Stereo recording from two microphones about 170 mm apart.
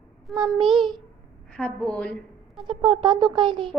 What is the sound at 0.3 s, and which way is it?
Speech, 5° right (ahead or behind).